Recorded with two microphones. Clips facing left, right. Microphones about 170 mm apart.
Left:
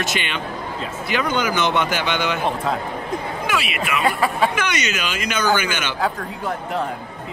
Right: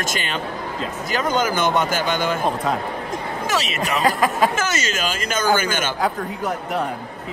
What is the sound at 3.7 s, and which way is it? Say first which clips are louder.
Speech: right 2 dB; 40° right (ahead or behind).